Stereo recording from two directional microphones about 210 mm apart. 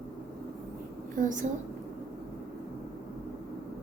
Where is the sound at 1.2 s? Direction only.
35° right (ahead or behind).